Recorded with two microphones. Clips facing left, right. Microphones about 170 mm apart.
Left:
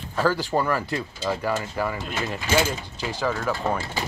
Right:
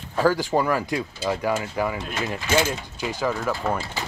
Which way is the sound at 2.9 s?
10° right (ahead or behind).